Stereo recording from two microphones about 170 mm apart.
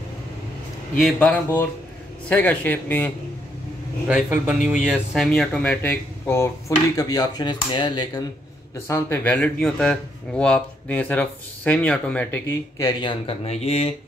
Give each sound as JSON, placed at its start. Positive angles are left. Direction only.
{"t": 1.0, "sound": "speech", "side_deg": 5}
{"t": 4.1, "sound": "speech", "side_deg": -10}